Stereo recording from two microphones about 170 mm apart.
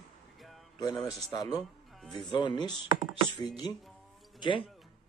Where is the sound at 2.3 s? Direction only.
25° left (ahead or behind).